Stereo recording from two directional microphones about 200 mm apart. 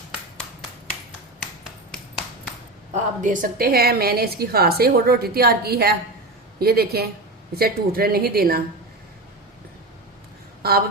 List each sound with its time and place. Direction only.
2.9 s a woman's voice: 40° right (ahead or behind)
10.6 s speech: 50° right (ahead or behind)